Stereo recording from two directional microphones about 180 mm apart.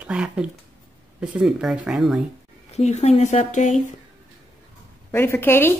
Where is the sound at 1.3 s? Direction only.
5° right (ahead or behind).